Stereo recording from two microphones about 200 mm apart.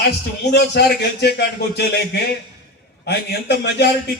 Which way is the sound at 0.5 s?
55° left (ahead or behind).